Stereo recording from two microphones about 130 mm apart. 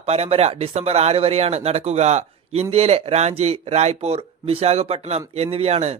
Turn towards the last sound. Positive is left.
turn(degrees=-55)  # may be behind; listen again after turning